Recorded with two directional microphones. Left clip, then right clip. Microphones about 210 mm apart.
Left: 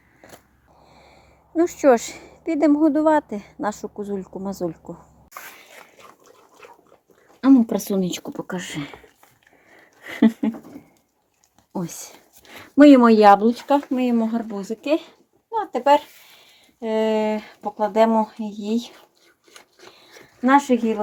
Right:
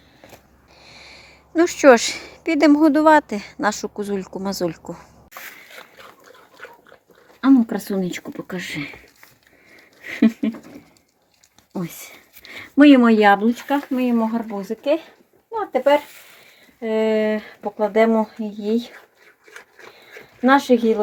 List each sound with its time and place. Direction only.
0.8 s speech: centre (ahead or behind)
7.4 s a sound: 5° left (ahead or behind)
8.5 s speech: 35° left (ahead or behind)
12.7 s speech: centre (ahead or behind)
20.4 s speech: 10° right (ahead or behind)